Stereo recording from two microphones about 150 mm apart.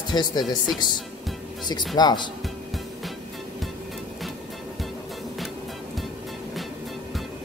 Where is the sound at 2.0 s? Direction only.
30° left (ahead or behind).